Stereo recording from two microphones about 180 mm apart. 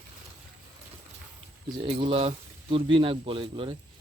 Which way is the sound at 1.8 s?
30° right (ahead or behind).